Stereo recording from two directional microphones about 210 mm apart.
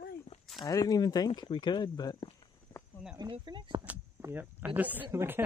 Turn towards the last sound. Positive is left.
turn(degrees=-10)  # may be behind; listen again after turning